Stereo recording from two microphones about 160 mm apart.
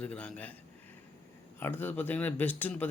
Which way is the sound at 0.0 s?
10° left (ahead or behind).